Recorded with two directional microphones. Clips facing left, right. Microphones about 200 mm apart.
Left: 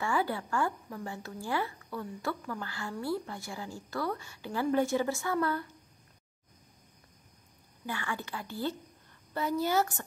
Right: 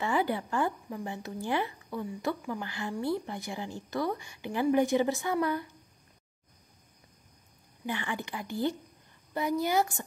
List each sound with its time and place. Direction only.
0.0 s speech: 20° right (ahead or behind)
7.8 s a woman's voice: 20° right (ahead or behind)